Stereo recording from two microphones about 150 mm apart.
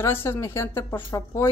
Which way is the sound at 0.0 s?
15° left (ahead or behind).